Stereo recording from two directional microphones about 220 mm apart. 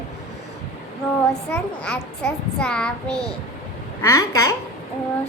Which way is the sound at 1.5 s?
5° left (ahead or behind).